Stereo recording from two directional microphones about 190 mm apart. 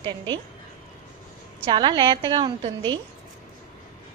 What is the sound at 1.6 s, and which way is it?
A woman's voice, 25° right (ahead or behind).